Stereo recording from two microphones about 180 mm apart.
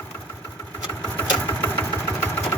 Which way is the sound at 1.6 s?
10° left (ahead or behind).